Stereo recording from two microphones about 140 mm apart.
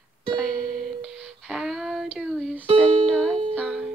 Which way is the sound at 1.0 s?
Centre (ahead or behind).